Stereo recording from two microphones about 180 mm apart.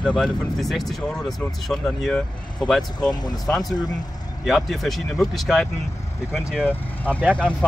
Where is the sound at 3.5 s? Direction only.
Centre (ahead or behind).